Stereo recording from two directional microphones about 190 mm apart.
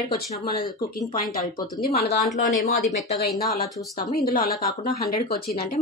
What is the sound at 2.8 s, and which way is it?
Speech, centre (ahead or behind).